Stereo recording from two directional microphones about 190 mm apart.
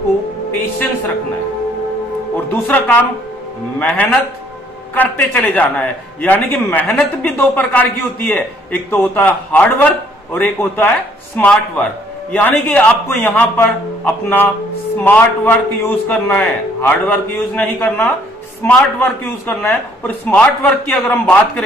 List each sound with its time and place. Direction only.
0.5 s a man's voice: 10° left (ahead or behind)
2.5 s a man's voice: 10° left (ahead or behind)